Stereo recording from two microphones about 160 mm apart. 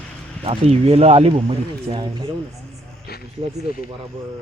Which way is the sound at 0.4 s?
35° right (ahead or behind).